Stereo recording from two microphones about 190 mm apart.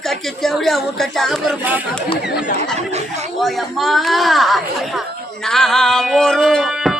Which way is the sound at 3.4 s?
Centre (ahead or behind).